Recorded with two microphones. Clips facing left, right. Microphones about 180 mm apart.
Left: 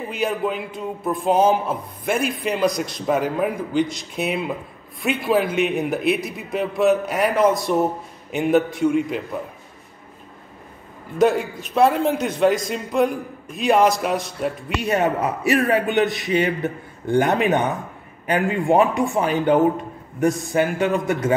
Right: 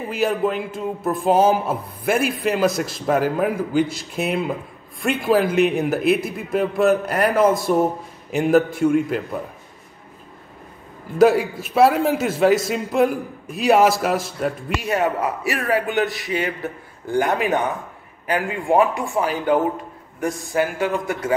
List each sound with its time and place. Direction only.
0.1 s a man's voice: centre (ahead or behind)
11.1 s a man's voice: 5° right (ahead or behind)
15.4 s a man's voice: 20° left (ahead or behind)